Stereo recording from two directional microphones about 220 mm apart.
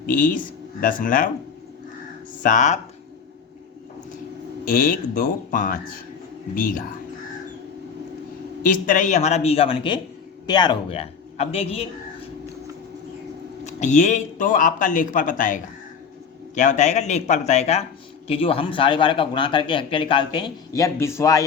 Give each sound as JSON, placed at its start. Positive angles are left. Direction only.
{"t": 0.1, "sound": "speech", "side_deg": 40}
{"t": 2.4, "sound": "speech", "side_deg": 35}
{"t": 4.6, "sound": "speech", "side_deg": 40}
{"t": 8.6, "sound": "a man's voice", "side_deg": 40}
{"t": 13.7, "sound": "a man's voice", "side_deg": 35}